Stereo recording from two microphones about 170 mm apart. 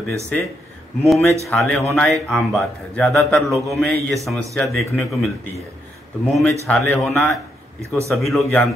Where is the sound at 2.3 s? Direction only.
5° left (ahead or behind).